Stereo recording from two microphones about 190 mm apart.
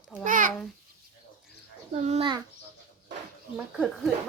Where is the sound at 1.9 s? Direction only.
35° right (ahead or behind).